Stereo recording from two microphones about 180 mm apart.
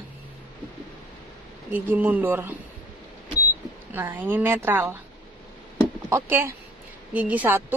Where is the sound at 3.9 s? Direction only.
10° right (ahead or behind).